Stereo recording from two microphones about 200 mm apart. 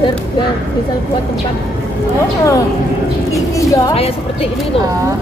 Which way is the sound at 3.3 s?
15° left (ahead or behind).